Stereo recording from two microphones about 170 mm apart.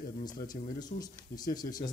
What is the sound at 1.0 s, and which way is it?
Speech, 20° left (ahead or behind).